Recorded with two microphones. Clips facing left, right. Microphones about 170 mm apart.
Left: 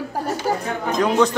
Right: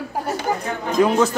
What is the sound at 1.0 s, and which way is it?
Speech, 5° right (ahead or behind).